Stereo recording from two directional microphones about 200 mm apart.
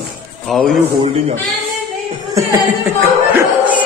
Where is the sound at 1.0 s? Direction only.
30° right (ahead or behind).